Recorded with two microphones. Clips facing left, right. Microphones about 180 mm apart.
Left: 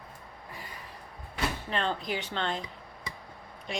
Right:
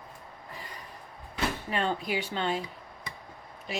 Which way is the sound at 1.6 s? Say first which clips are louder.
Right 2 dB; 10° right (ahead or behind).